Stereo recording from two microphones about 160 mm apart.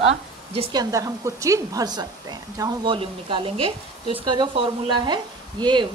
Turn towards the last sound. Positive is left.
turn(degrees=-25)  # may be behind; listen again after turning